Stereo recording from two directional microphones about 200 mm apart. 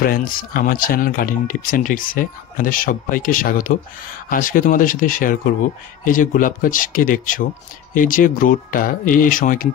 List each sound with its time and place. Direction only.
0.0 s speech: 45° left (ahead or behind)